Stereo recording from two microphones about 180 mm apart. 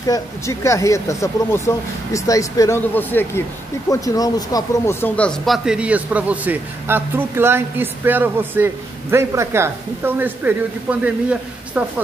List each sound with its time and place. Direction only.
0.0 s speech: 20° left (ahead or behind); by 11.8 s 10° right (ahead or behind)